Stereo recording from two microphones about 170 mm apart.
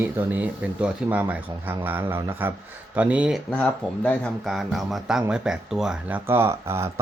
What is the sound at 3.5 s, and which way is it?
Speech, 5° left (ahead or behind).